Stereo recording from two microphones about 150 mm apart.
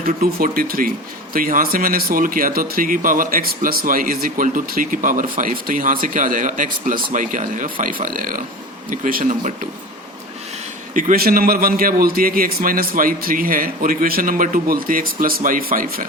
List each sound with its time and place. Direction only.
0.0 s speech: 80° right
10.9 s speech: 75° right (ahead or behind)